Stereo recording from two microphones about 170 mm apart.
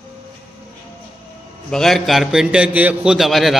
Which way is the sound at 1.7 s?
Centre (ahead or behind).